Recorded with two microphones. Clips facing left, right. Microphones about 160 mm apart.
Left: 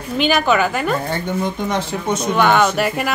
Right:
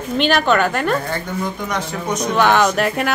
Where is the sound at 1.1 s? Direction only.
25° left (ahead or behind).